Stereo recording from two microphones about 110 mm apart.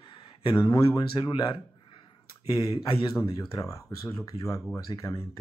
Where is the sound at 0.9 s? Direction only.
40° left (ahead or behind).